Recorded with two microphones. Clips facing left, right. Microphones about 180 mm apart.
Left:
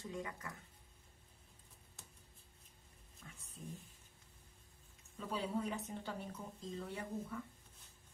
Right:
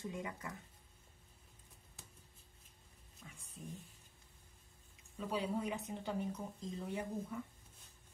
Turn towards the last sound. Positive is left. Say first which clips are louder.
# right 2 dB
turn(degrees=-15)  # may be behind; listen again after turning